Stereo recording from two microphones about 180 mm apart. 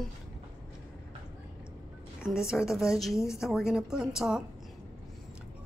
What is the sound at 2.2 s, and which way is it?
A woman's voice, 5° right (ahead or behind).